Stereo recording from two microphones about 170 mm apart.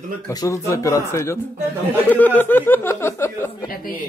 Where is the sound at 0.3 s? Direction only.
20° left (ahead or behind).